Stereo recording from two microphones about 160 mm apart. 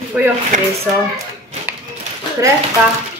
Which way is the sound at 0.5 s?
50° right (ahead or behind).